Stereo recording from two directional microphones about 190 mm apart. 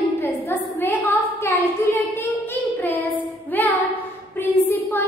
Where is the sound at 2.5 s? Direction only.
10° left (ahead or behind).